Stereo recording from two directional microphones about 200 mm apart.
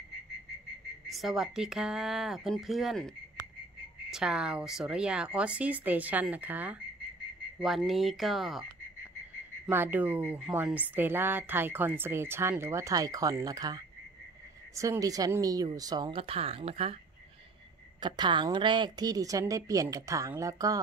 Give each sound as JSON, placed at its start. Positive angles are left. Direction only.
{"t": 1.0, "sound": "speech", "side_deg": 0}
{"t": 4.1, "sound": "a woman's voice", "side_deg": -5}
{"t": 9.7, "sound": "a woman's voice", "side_deg": -10}
{"t": 18.0, "sound": "a woman's voice", "side_deg": -20}